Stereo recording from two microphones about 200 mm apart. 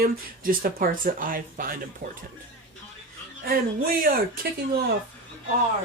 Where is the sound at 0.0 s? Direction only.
45° right (ahead or behind).